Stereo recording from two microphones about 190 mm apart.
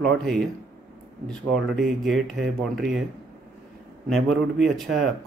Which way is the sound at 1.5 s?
Centre (ahead or behind).